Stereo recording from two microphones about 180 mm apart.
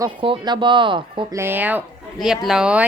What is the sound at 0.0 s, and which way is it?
Speech, 25° right (ahead or behind).